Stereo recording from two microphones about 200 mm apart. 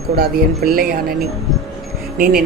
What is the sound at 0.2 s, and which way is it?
Speech, 50° right (ahead or behind).